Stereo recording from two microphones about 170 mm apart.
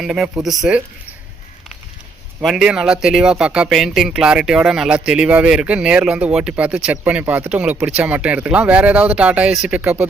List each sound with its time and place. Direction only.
0.0 s speech: centre (ahead or behind)
2.4 s speech: centre (ahead or behind)